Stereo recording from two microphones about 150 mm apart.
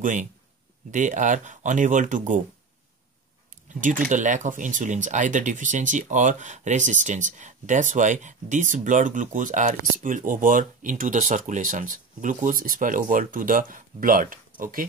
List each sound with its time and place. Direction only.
0.0 s speech: 60° right (ahead or behind)
4.1 s speech: 55° right (ahead or behind)